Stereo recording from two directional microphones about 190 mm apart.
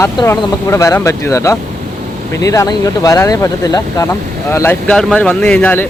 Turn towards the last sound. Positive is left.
turn(degrees=10)  # may be behind; listen again after turning